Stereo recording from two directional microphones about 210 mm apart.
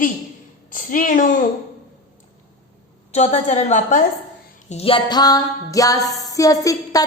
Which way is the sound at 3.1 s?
30° left (ahead or behind).